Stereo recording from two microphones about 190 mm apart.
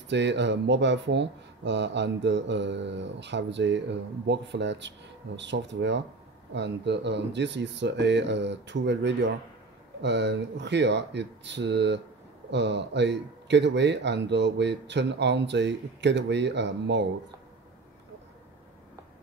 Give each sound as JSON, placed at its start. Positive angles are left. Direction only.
{"t": 0.1, "sound": "speech", "side_deg": -65}